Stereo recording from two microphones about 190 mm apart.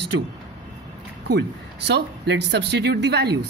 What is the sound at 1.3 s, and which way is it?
Speech, 65° right (ahead or behind).